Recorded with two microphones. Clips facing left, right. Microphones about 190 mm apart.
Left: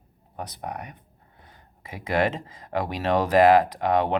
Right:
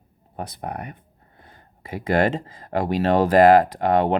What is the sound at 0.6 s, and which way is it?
Speech, 55° right (ahead or behind).